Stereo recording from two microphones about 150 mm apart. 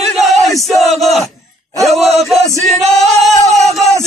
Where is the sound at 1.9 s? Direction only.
Centre (ahead or behind).